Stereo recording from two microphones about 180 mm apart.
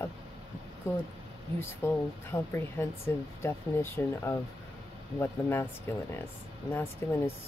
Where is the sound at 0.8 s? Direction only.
15° left (ahead or behind).